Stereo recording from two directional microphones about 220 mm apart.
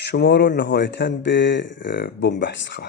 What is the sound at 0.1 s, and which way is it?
Speech, 50° left (ahead or behind).